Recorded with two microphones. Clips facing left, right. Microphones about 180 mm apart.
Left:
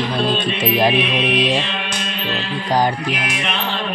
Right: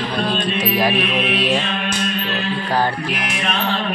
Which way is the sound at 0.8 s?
20° left (ahead or behind).